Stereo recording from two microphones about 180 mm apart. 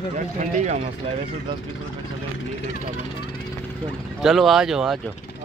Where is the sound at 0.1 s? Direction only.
40° right (ahead or behind).